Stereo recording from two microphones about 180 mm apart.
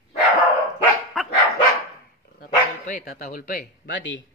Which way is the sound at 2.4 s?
55° left (ahead or behind).